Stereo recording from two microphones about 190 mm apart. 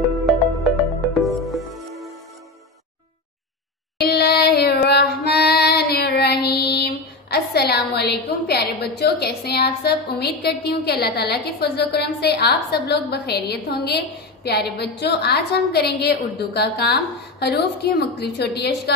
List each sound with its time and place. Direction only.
0.1 s music: centre (ahead or behind)
4.0 s child singing: 55° left (ahead or behind)